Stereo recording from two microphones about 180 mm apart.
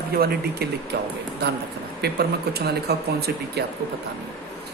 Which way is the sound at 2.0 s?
65° right (ahead or behind).